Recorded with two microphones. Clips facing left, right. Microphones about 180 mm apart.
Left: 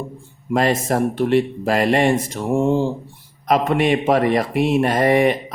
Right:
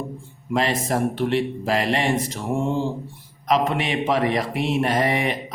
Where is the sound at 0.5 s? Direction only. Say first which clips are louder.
Left 4 dB; 45° left (ahead or behind).